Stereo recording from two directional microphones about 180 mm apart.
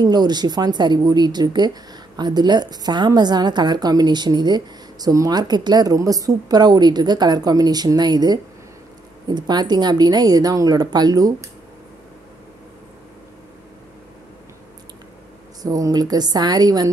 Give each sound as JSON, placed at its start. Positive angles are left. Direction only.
{"t": 0.0, "sound": "a woman's voice", "side_deg": -25}
{"t": 15.6, "sound": "a woman's voice", "side_deg": -20}